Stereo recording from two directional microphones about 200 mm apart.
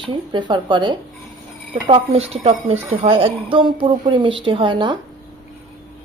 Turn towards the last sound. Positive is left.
turn(degrees=-25)  # may be behind; listen again after turning